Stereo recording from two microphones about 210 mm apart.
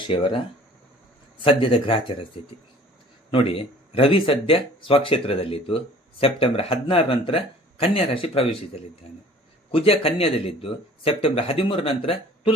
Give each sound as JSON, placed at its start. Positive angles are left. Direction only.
{"t": 0.1, "sound": "speech", "side_deg": 25}
{"t": 1.5, "sound": "speech", "side_deg": 25}
{"t": 3.3, "sound": "speech", "side_deg": 25}